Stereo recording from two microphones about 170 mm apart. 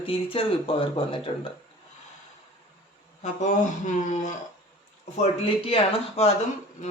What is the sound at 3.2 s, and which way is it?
Speech, 45° left (ahead or behind).